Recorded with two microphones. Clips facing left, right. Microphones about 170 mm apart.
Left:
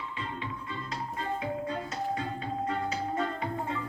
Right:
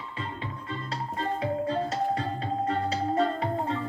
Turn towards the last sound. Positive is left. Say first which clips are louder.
# right 4 dB
turn(degrees=-30)  # may be behind; listen again after turning